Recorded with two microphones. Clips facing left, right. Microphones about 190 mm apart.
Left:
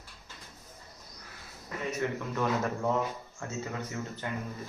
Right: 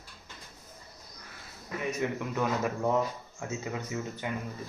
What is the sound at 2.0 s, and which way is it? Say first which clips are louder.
Speech: even; 15° right (ahead or behind).